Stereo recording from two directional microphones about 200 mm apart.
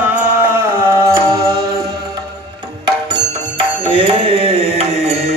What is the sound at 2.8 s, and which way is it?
Music, 25° right (ahead or behind).